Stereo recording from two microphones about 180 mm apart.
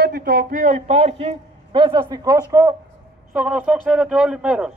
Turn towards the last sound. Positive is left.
turn(degrees=-5)  # may be behind; listen again after turning